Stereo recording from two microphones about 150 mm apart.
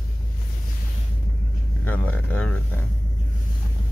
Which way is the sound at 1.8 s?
10° left (ahead or behind).